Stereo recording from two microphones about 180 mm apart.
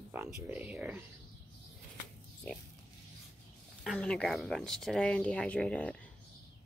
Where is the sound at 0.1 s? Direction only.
10° right (ahead or behind).